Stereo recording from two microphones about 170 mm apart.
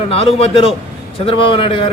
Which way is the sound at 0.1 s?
35° left (ahead or behind).